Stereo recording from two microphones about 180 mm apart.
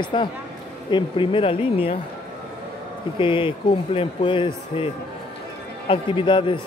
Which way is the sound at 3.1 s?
30° left (ahead or behind).